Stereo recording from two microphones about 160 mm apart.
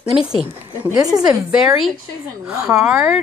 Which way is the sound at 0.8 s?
25° right (ahead or behind).